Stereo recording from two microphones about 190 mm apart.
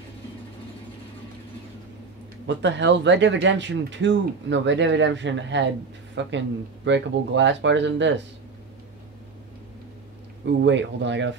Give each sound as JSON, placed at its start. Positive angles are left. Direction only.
{"t": 2.4, "sound": "speech", "side_deg": -70}
{"t": 10.6, "sound": "speech", "side_deg": -70}